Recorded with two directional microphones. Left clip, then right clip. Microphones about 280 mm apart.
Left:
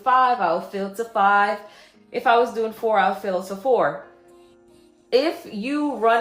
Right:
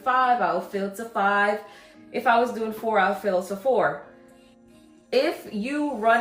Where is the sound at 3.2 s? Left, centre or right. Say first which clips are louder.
Right 1 dB; left.